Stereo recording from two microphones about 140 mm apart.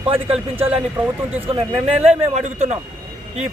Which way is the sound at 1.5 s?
40° right (ahead or behind).